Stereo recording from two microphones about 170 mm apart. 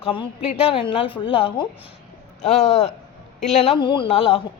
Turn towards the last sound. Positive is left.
turn(degrees=35)  # may be behind; listen again after turning